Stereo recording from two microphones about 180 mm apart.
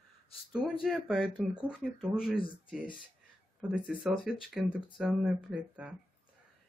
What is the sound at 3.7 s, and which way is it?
Speech, 5° right (ahead or behind).